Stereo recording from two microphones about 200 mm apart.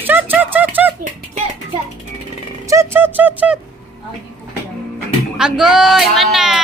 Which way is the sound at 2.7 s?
15° right (ahead or behind).